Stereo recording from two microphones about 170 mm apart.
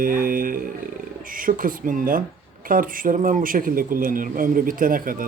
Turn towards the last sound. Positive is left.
turn(degrees=-55)  # may be behind; listen again after turning